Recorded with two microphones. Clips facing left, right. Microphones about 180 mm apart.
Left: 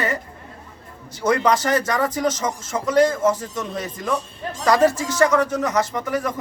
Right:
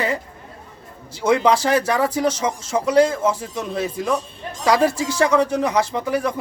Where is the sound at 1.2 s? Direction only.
10° right (ahead or behind).